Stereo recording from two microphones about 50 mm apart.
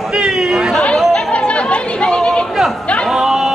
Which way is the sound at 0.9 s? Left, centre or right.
Left.